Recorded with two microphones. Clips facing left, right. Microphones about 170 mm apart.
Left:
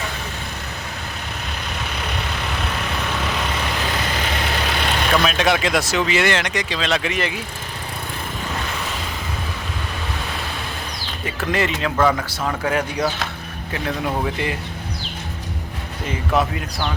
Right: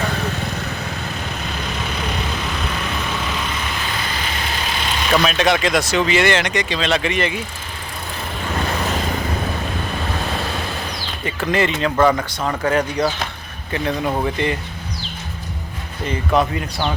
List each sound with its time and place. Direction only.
4.4 s vehicle: 65° left (ahead or behind)
5.1 s speech: centre (ahead or behind)
11.3 s speech: centre (ahead or behind)
16.0 s speech: 5° left (ahead or behind)